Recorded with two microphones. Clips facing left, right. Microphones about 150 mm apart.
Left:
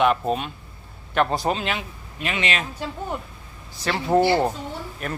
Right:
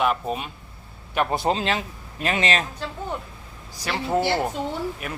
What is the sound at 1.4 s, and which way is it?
Speech, 30° right (ahead or behind).